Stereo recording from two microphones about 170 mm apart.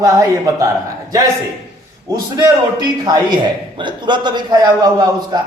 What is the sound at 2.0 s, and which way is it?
A man's voice, 25° right (ahead or behind).